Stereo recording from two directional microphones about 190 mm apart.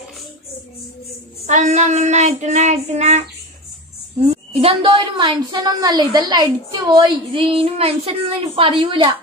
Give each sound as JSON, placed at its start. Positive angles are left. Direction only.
{"t": 1.4, "sound": "child singing", "side_deg": -40}
{"t": 4.2, "sound": "a woman's voice", "side_deg": -30}